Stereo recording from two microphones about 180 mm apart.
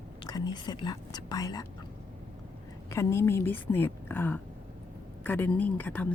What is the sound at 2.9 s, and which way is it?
A woman's voice, 15° left (ahead or behind).